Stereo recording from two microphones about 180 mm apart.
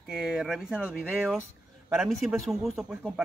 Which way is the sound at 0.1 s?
Centre (ahead or behind).